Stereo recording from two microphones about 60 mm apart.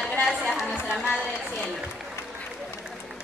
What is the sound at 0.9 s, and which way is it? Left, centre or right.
Speech, centre.